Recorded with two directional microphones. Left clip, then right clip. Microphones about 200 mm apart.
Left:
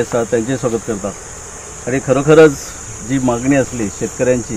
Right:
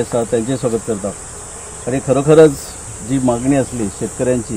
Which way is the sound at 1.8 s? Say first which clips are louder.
Left 1 dB; 15° right (ahead or behind).